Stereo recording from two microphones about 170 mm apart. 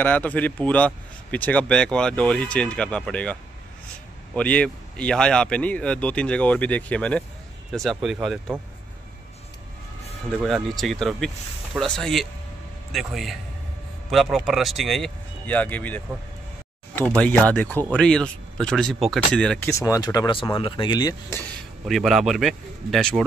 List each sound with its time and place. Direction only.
0.0 s a man's voice: 10° left (ahead or behind)
4.4 s a man's voice: 5° left (ahead or behind)
10.4 s speech: centre (ahead or behind)
17.2 s a man's voice: 5° left (ahead or behind)
19.7 s speech: 20° left (ahead or behind)
21.8 s speech: centre (ahead or behind)